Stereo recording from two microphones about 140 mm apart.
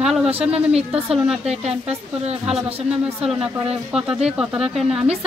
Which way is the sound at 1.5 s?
50° right (ahead or behind).